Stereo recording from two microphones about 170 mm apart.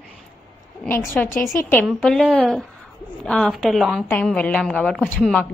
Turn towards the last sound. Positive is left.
turn(degrees=10)  # may be behind; listen again after turning